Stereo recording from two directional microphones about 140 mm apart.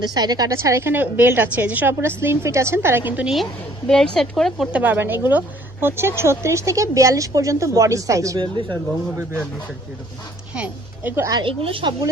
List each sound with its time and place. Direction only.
0.0 s a woman's voice: 30° right (ahead or behind); by 3.3 s 10° right (ahead or behind)
3.8 s speech: 5° left (ahead or behind)
4.7 s a woman's voice: 15° right (ahead or behind); by 9.2 s 30° right (ahead or behind)
10.5 s speech: 10° right (ahead or behind)
11.3 s a woman's voice: 40° right (ahead or behind)